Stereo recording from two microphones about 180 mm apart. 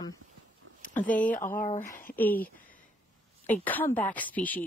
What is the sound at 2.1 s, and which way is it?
Speech, 10° left (ahead or behind).